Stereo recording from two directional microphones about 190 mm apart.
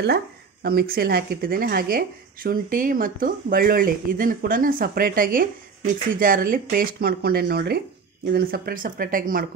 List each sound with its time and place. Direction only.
0.7 s speech: 50° right (ahead or behind)